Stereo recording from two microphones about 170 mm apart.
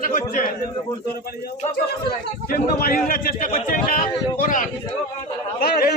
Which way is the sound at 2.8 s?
55° left (ahead or behind).